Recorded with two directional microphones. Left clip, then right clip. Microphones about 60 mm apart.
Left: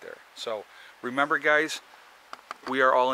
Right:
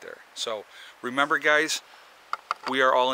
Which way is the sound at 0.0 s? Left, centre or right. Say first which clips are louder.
Right 3 dB; centre.